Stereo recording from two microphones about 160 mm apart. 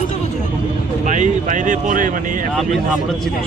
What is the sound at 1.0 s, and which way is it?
Speech, 50° right (ahead or behind).